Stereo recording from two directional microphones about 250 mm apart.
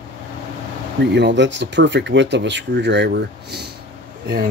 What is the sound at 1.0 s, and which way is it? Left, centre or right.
Speech, right.